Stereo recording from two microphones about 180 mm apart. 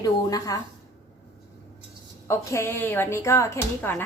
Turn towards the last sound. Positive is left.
turn(degrees=15)  # may be behind; listen again after turning